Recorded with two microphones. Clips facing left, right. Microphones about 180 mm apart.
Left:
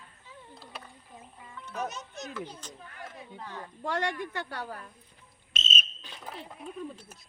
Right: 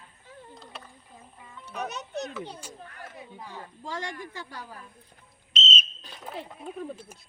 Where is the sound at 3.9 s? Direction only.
65° left (ahead or behind).